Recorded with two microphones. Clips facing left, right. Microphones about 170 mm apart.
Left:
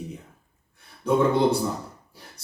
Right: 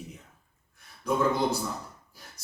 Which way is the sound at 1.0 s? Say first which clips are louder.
Left 6 dB; 30° left (ahead or behind).